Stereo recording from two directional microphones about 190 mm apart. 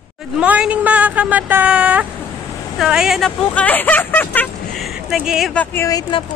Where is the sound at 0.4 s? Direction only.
5° right (ahead or behind).